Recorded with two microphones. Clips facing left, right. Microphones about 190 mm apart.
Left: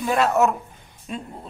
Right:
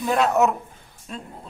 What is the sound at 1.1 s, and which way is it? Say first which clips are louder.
Speech: left 4 dB; 15° left (ahead or behind).